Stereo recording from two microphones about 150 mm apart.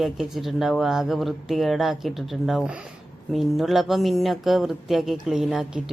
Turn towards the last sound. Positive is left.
turn(degrees=-5)  # may be behind; listen again after turning